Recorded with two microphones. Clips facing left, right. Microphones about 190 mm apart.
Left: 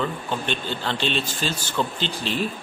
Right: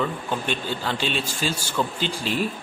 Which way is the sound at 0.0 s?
5° right (ahead or behind).